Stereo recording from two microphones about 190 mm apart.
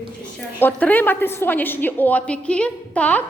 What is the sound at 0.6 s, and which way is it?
A woman's voice, 10° left (ahead or behind).